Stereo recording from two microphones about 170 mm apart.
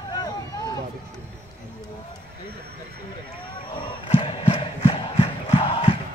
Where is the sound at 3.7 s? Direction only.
30° left (ahead or behind).